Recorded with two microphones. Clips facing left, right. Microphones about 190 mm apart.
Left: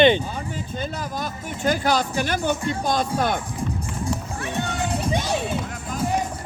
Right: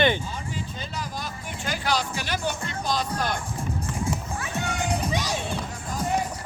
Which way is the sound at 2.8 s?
50° left (ahead or behind).